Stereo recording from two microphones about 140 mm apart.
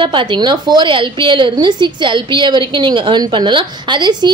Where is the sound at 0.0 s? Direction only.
35° right (ahead or behind).